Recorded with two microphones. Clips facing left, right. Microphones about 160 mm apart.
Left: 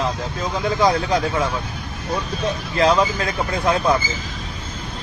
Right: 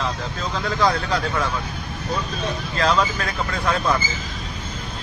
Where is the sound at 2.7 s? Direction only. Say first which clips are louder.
Left 4 dB; 20° left (ahead or behind).